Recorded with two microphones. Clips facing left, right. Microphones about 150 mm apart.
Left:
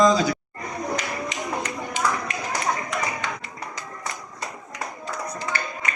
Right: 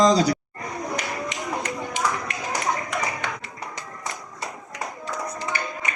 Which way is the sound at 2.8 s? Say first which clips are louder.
Even; 60° right (ahead or behind).